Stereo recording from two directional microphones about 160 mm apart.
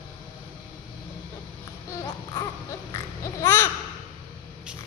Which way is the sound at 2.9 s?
15° left (ahead or behind).